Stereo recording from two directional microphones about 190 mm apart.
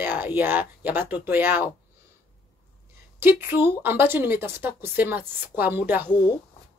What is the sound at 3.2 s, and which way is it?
Speech, 10° right (ahead or behind).